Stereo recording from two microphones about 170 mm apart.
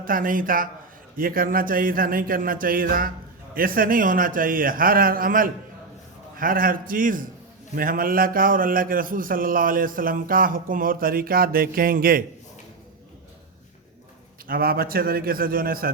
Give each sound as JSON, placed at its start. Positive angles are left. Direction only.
{"t": 0.0, "sound": "a man's voice", "side_deg": -55}
{"t": 14.4, "sound": "a man's voice", "side_deg": -60}